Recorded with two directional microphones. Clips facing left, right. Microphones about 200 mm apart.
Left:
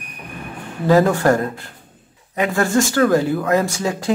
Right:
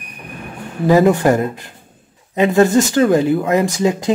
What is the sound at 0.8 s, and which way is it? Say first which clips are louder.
Speech: right 2 dB; 15° right (ahead or behind).